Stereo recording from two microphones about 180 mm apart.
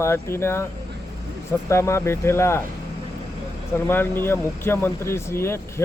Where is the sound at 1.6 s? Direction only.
15° left (ahead or behind).